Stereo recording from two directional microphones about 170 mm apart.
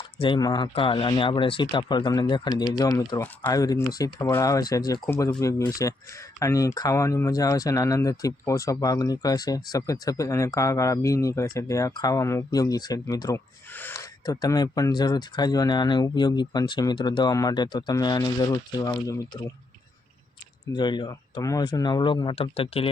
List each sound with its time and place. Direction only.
0.0 s speech: 30° left (ahead or behind)
20.7 s speech: 25° left (ahead or behind)